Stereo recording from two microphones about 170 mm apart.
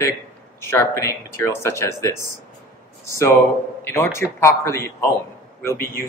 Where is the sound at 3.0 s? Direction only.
15° left (ahead or behind).